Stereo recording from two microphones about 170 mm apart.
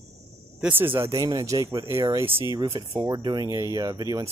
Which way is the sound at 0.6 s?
10° right (ahead or behind).